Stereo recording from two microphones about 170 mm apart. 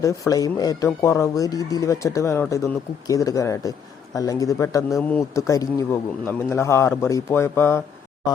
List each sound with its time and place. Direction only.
0.0 s speech: 20° left (ahead or behind)
4.9 s a man's voice: centre (ahead or behind)
5.3 s a man's voice: 20° left (ahead or behind)